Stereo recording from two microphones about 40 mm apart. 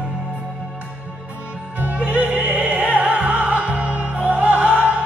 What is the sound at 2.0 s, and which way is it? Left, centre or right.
Opera, right.